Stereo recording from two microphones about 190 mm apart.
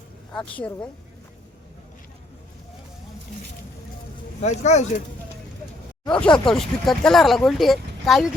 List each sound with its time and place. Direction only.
0.3 s speech: 5° left (ahead or behind)
4.4 s speech: 35° left (ahead or behind)
6.1 s speech: 5° left (ahead or behind)